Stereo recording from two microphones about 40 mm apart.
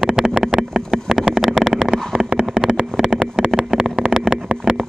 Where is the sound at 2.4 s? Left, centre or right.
Right.